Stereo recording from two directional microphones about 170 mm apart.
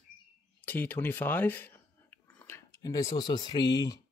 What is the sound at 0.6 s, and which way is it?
Chewing, 10° left (ahead or behind).